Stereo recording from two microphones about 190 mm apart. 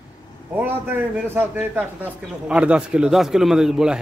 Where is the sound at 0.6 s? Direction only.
10° right (ahead or behind).